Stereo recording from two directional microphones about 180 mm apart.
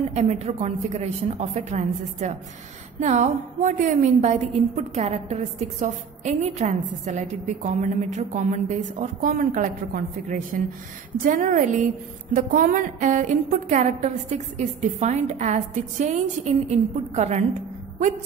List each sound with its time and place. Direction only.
0.1 s a woman's voice: 40° right (ahead or behind)